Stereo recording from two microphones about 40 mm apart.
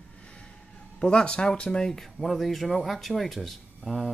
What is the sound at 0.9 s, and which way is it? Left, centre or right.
Speech, left.